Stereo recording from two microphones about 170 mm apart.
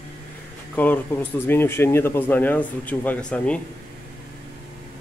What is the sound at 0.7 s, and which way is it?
A man's voice, 10° left (ahead or behind).